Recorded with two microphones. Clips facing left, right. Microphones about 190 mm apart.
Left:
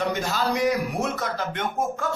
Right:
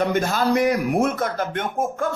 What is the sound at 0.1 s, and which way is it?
A man's voice, 50° right (ahead or behind).